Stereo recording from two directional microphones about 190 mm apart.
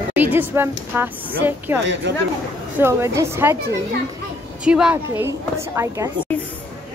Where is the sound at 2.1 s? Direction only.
65° right (ahead or behind).